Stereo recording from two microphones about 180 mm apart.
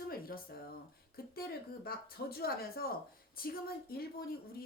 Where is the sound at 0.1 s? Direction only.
55° left (ahead or behind).